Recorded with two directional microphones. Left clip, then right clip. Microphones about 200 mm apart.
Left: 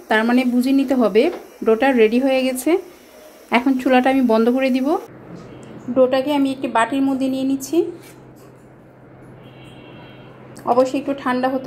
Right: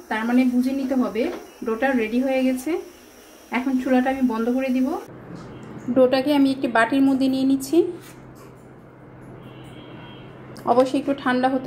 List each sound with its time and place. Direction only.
0.1 s speech: 45° left (ahead or behind)
5.9 s a woman's voice: 5° right (ahead or behind)
10.5 s a woman's voice: centre (ahead or behind)